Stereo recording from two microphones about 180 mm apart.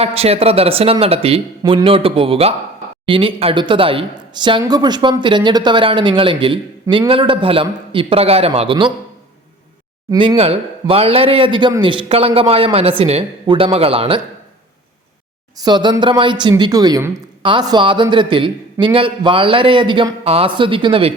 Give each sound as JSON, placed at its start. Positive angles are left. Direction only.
{"t": 0.0, "sound": "a man's voice", "side_deg": -35}
{"t": 10.1, "sound": "a man's voice", "side_deg": -25}
{"t": 15.6, "sound": "a woman's voice", "side_deg": -25}